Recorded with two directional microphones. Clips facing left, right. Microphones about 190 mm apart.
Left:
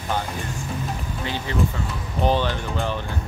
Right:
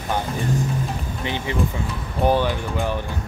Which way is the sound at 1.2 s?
20° right (ahead or behind).